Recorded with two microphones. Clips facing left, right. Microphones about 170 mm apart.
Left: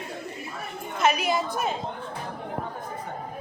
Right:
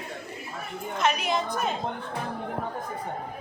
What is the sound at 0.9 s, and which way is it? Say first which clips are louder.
Speech: left 2 dB; 5° left (ahead or behind).